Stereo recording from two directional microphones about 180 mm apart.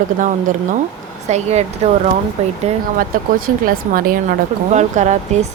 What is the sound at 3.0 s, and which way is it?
Speech, 50° right (ahead or behind).